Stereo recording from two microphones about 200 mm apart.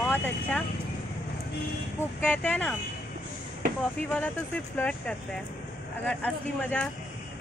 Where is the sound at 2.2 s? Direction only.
5° left (ahead or behind).